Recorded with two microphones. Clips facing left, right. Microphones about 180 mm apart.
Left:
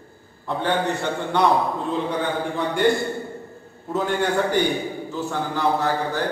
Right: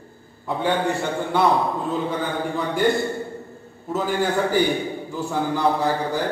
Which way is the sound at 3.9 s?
Centre (ahead or behind).